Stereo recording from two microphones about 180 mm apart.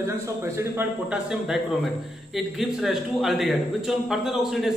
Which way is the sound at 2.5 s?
Centre (ahead or behind).